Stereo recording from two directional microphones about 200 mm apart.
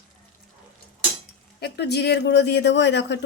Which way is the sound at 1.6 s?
55° left (ahead or behind).